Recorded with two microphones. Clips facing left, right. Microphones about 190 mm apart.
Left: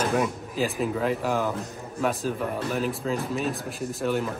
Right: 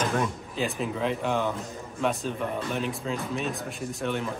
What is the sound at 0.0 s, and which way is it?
Speech, 5° left (ahead or behind).